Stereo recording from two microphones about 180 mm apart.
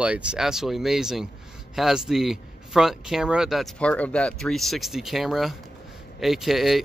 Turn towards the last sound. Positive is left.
turn(degrees=0)  # may be behind; listen again after turning